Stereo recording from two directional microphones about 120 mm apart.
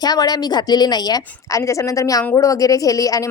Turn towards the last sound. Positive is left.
turn(degrees=30)  # may be behind; listen again after turning